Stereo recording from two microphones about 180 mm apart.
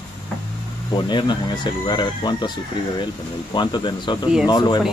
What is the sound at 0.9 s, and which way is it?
Speech, 25° left (ahead or behind).